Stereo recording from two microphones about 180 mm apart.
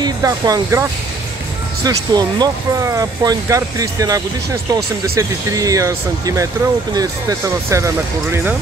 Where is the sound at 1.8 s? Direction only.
20° right (ahead or behind).